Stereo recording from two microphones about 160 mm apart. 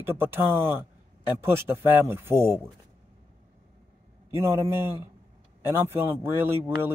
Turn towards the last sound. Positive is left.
turn(degrees=-15)  # may be behind; listen again after turning